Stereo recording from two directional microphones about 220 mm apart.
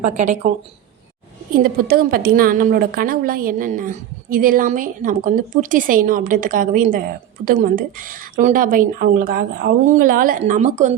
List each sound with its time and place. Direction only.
0.0 s a woman's voice: 35° right (ahead or behind)
1.5 s a woman's voice: 40° right (ahead or behind)